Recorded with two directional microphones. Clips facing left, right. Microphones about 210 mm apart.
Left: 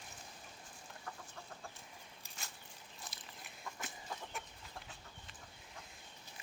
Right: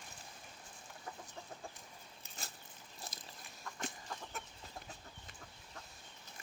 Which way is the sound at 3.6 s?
5° left (ahead or behind).